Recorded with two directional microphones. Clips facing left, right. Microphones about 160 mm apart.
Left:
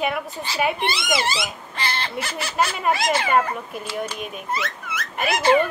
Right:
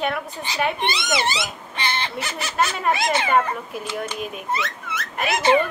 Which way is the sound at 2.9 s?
20° right (ahead or behind).